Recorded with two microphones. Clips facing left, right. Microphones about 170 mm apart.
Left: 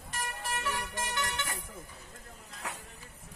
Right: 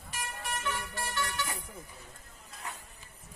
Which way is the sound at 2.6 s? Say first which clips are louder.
Left 2 dB; 75° left (ahead or behind).